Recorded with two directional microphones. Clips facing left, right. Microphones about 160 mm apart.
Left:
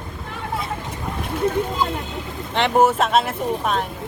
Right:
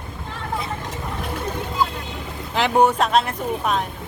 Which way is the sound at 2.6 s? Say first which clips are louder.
Even; centre (ahead or behind).